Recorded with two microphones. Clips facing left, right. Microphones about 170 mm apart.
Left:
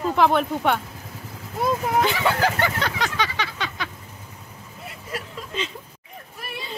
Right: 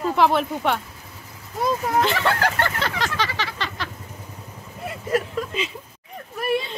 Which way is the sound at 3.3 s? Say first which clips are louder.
Even; centre (ahead or behind).